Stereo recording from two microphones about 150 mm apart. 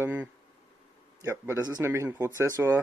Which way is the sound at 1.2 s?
25° right (ahead or behind).